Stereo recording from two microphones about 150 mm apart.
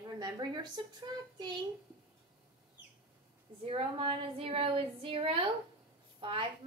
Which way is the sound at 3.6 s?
40° right (ahead or behind).